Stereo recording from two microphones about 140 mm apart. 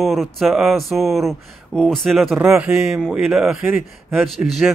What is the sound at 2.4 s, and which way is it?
Speech, 15° right (ahead or behind).